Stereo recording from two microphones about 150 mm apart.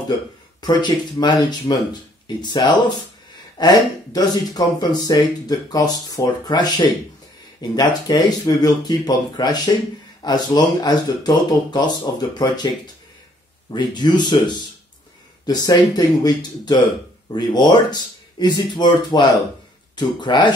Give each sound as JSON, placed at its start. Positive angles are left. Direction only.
{"t": 0.6, "sound": "speech", "side_deg": 30}
{"t": 7.7, "sound": "speech", "side_deg": 25}